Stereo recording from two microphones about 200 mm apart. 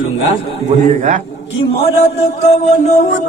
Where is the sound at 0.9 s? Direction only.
40° right (ahead or behind).